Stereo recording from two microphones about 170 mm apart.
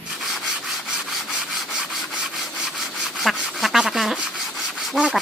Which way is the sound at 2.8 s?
Centre (ahead or behind).